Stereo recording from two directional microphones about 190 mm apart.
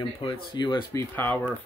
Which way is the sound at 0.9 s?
10° left (ahead or behind).